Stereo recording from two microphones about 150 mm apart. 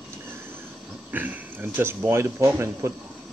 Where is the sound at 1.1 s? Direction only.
10° right (ahead or behind).